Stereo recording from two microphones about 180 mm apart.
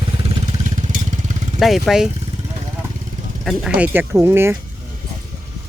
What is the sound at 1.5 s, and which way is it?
Speech, centre (ahead or behind).